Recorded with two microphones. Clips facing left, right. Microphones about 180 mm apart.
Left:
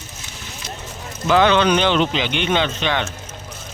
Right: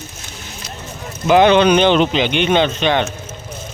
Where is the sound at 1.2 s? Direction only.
15° right (ahead or behind).